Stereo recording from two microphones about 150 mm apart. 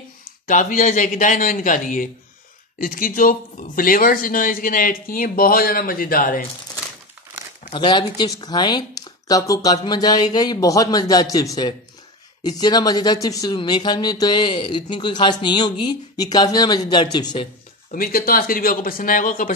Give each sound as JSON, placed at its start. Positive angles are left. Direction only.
{"t": 0.5, "sound": "a man's voice", "side_deg": 55}
{"t": 7.7, "sound": "speech", "side_deg": 30}
{"t": 17.9, "sound": "speech", "side_deg": 75}